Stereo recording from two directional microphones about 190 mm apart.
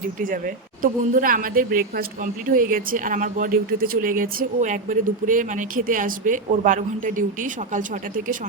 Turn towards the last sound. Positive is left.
turn(degrees=-45)  # may be behind; listen again after turning